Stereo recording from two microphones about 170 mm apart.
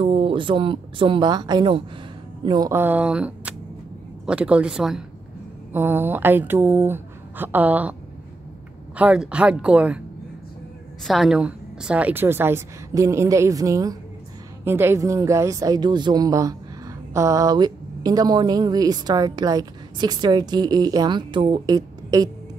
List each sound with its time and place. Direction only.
0.0 s a woman's voice: 35° right (ahead or behind); by 7.9 s 10° right (ahead or behind)
8.9 s a woman's voice: 5° right (ahead or behind)
11.1 s a woman's voice: centre (ahead or behind); by 22.3 s 25° right (ahead or behind)